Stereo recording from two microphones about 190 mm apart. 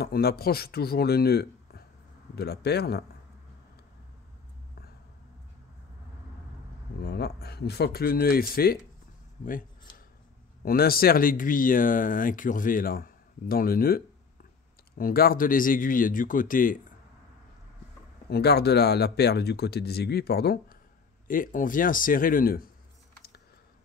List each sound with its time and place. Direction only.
0.0 s speech: 55° left (ahead or behind)
7.0 s speech: 60° left (ahead or behind)
18.3 s speech: 60° left (ahead or behind)